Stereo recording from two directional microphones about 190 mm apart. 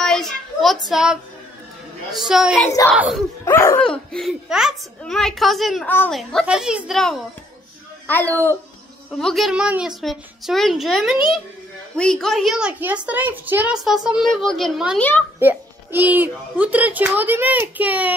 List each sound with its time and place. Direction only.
0.0 s a sound: centre (ahead or behind)
0.8 s a woman's voice: 5° right (ahead or behind)
2.6 s laughter: 15° left (ahead or behind)
3.0 s a woman's voice: centre (ahead or behind)
3.4 s laughter: 10° left (ahead or behind)
3.8 s a woman's voice: 5° left (ahead or behind)
8.1 s laughter: 10° left (ahead or behind)
9.1 s a woman's voice: centre (ahead or behind)
15.0 s laughter: 10° left (ahead or behind)
15.3 s a child's voice: 10° right (ahead or behind)